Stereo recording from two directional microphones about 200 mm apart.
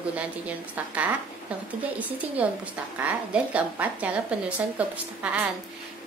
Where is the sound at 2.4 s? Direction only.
5° right (ahead or behind).